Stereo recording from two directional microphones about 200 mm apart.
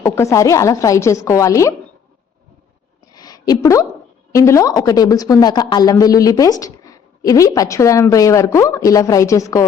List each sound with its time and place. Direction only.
0.0 s a woman's voice: 15° left (ahead or behind)
3.1 s a sound: 20° left (ahead or behind)
4.3 s a woman's voice: 15° left (ahead or behind)